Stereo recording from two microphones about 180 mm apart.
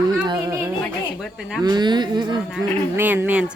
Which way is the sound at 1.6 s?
25° right (ahead or behind).